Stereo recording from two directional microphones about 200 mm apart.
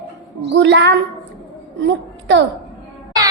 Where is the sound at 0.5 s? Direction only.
60° right (ahead or behind).